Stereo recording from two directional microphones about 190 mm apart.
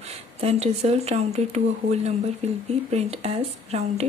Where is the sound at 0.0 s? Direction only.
35° right (ahead or behind).